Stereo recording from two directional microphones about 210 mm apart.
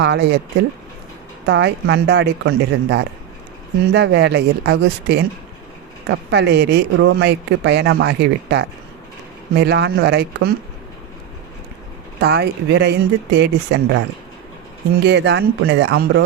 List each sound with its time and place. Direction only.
0.0 s speech: 55° right (ahead or behind)
1.5 s speech: 60° right (ahead or behind)
12.2 s speech: 50° right (ahead or behind)
15.0 s speech: 55° right (ahead or behind)